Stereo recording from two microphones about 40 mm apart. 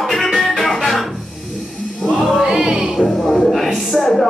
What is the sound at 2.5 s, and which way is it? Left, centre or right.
Music, centre.